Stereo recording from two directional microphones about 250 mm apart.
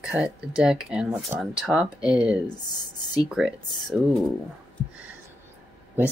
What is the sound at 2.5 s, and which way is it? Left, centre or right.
Speech, centre.